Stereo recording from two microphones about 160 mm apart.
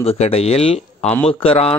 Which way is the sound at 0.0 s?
40° left (ahead or behind).